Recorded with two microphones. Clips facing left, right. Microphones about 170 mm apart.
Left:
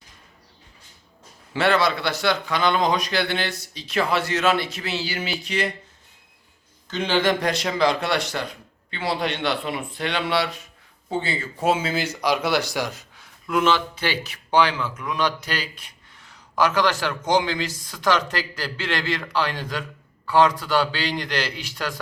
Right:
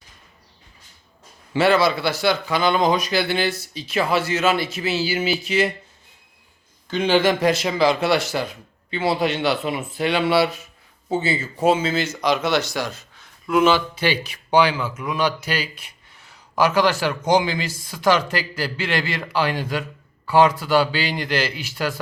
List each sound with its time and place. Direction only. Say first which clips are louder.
1.5 s a man's voice: right 3 dB; 5° right (ahead or behind)
6.9 s a man's voice: right 3 dB; 10° right (ahead or behind)
11.6 s speech: right 3 dB; 5° left (ahead or behind)
13.5 s a man's voice: right 4 dB; 5° right (ahead or behind)